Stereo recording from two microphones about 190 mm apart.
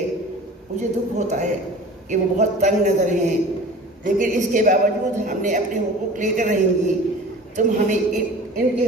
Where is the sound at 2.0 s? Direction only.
40° right (ahead or behind).